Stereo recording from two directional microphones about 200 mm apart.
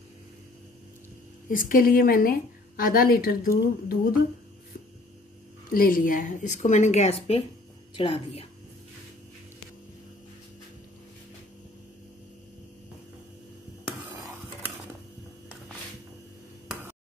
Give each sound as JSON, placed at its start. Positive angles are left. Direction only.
{"t": 1.5, "sound": "speech", "side_deg": 45}
{"t": 5.7, "sound": "a woman's voice", "side_deg": 45}
{"t": 13.8, "sound": "dishes", "side_deg": -10}